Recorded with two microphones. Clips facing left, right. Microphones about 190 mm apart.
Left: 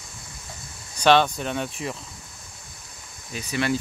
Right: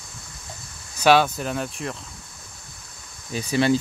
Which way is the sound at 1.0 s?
5° right (ahead or behind).